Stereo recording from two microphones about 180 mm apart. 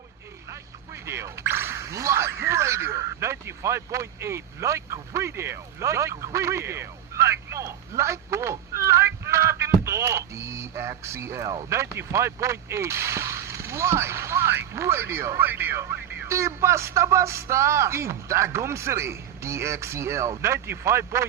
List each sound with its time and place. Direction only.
1.0 s speech: 15° right (ahead or behind)